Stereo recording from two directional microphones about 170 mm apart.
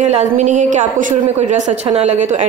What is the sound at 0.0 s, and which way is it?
A woman's voice, 45° right (ahead or behind).